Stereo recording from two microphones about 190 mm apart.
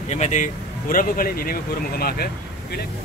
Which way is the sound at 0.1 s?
40° left (ahead or behind).